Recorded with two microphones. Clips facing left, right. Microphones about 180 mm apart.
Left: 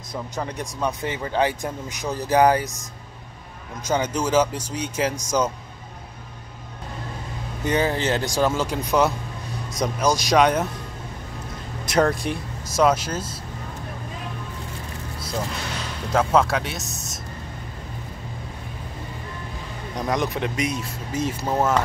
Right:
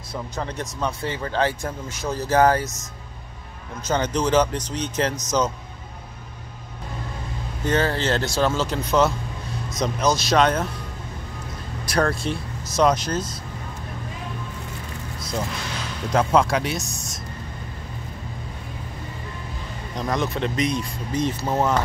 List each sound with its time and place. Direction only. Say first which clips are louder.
0.1 s speech: even; 15° left (ahead or behind)
3.8 s speech: right 1 dB; 10° left (ahead or behind)
7.6 s speech: even; 15° left (ahead or behind)
11.8 s speech: left 2 dB; 20° left (ahead or behind)
16.1 s speech: even; 5° left (ahead or behind)
20.0 s speech: even; 10° left (ahead or behind)